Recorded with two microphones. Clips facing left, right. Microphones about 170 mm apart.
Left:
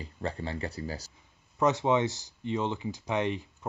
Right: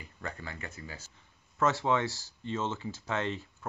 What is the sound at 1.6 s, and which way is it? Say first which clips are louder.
Speech: left 3 dB; 20° left (ahead or behind).